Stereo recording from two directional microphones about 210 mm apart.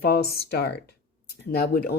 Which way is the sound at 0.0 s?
50° left (ahead or behind).